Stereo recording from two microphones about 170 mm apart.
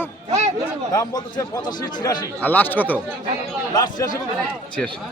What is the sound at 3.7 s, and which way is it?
Speech, 25° left (ahead or behind).